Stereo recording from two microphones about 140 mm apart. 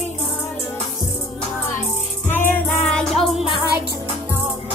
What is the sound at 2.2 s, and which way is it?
Music, 15° left (ahead or behind).